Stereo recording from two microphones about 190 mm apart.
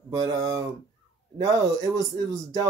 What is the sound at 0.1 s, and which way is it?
Speech, 20° right (ahead or behind).